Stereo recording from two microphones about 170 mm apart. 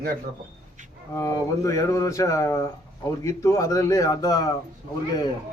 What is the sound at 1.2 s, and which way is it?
A man's voice, 20° left (ahead or behind).